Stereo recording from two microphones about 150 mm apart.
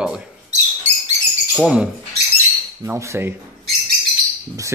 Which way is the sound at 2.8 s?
20° right (ahead or behind).